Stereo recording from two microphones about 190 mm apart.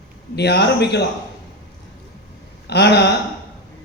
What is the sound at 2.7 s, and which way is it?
Speech, 60° left (ahead or behind).